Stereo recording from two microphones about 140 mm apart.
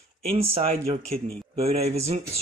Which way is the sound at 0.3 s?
45° right (ahead or behind).